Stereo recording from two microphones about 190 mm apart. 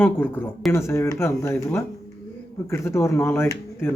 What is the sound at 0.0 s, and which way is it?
Speech, 10° left (ahead or behind).